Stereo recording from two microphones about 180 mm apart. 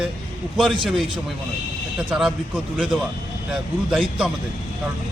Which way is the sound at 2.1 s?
5° right (ahead or behind).